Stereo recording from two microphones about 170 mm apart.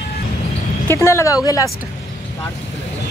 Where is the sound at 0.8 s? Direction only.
15° left (ahead or behind).